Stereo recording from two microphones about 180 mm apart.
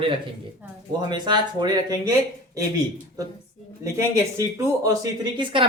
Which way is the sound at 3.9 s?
15° right (ahead or behind).